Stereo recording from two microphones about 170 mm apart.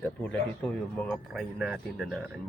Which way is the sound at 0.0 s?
10° left (ahead or behind).